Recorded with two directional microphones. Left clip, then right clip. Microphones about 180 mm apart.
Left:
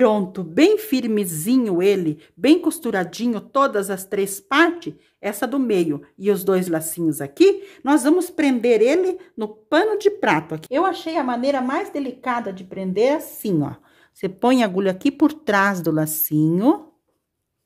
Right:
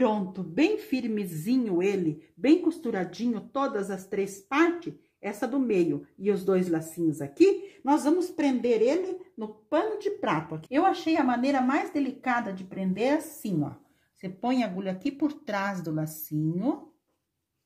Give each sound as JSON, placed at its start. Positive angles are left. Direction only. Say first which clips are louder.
{"t": 0.0, "sound": "a woman's voice", "louder": "left 9 dB", "side_deg": 65}